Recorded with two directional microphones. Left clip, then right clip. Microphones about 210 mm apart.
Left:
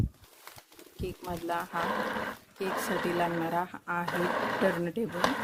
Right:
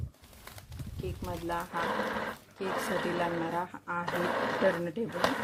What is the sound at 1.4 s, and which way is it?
Speech, 60° left (ahead or behind).